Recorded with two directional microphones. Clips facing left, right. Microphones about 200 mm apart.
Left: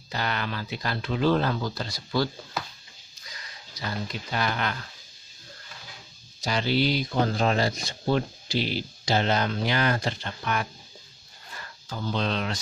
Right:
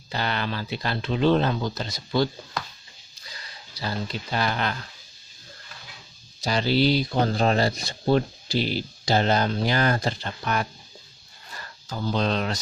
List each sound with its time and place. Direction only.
0.1 s speech: 30° right (ahead or behind)
2.6 s a sound: 5° left (ahead or behind)
3.3 s speech: 30° right (ahead or behind)
6.4 s speech: 35° right (ahead or behind)
11.9 s speech: 40° right (ahead or behind)